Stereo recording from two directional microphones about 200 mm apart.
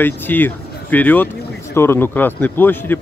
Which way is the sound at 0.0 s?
10° left (ahead or behind).